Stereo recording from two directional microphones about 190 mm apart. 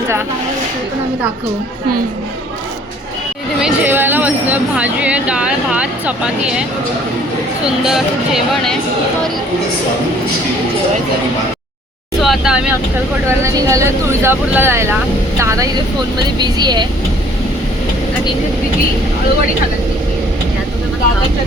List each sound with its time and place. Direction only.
3.6 s speech: 10° right (ahead or behind)
12.2 s speech: centre (ahead or behind)
13.4 s speech: 15° right (ahead or behind)